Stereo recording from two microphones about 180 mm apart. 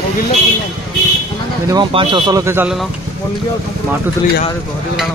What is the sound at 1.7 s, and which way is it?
Speech, 25° right (ahead or behind).